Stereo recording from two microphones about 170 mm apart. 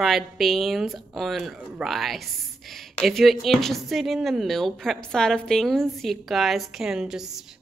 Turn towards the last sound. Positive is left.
turn(degrees=-5)  # may be behind; listen again after turning